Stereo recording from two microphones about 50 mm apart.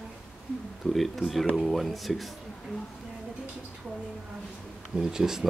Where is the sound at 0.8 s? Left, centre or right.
Centre.